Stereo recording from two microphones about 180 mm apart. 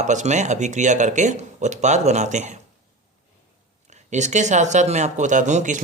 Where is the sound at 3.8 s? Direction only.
40° right (ahead or behind).